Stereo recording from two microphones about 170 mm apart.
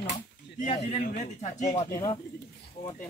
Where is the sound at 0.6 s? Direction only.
45° left (ahead or behind).